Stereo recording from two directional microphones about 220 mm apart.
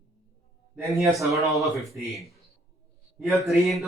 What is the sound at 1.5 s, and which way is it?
A man's voice, centre (ahead or behind).